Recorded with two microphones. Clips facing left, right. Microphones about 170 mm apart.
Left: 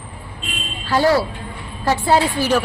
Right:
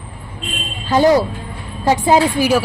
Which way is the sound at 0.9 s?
20° right (ahead or behind).